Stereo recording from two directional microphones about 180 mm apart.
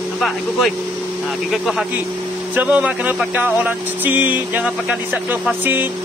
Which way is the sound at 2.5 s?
10° right (ahead or behind).